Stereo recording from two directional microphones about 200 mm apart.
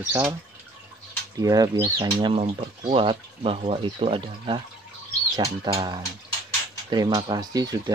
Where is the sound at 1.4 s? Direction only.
20° right (ahead or behind).